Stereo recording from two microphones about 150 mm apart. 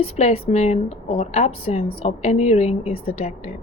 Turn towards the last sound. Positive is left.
turn(degrees=45)  # may be behind; listen again after turning